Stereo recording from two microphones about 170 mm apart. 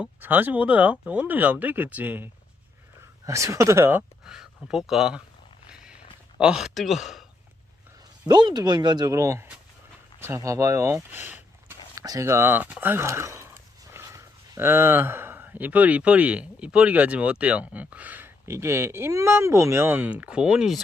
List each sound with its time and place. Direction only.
0.0 s speech: 10° right (ahead or behind)
5.6 s a sound: 5° right (ahead or behind)
6.4 s speech: 5° right (ahead or behind)
8.3 s speech: 25° right (ahead or behind); by 20.8 s centre (ahead or behind)